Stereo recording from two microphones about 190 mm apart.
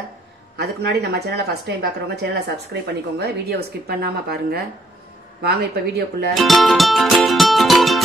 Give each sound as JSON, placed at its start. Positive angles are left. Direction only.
{"t": 0.6, "sound": "a woman's voice", "side_deg": -60}
{"t": 6.3, "sound": "music", "side_deg": 0}